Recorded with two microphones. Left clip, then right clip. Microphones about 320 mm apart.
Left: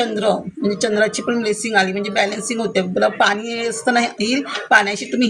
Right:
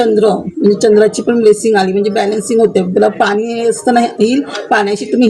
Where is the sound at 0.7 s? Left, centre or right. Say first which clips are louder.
Right 9 dB; left.